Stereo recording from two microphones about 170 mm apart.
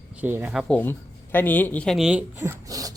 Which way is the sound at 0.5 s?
10° left (ahead or behind).